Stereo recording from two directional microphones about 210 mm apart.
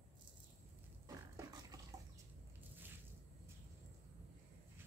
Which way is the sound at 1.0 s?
15° right (ahead or behind).